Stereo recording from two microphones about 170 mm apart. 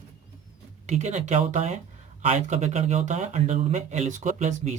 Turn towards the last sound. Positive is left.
turn(degrees=-45)  # may be behind; listen again after turning